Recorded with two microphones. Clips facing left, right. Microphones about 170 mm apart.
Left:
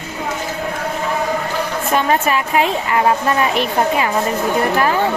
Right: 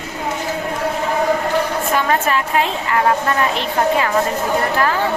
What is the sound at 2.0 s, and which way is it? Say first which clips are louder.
A woman's voice: left 2 dB; 15° left (ahead or behind).